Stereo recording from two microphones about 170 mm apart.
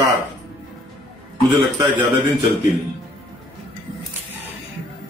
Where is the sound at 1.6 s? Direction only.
25° right (ahead or behind).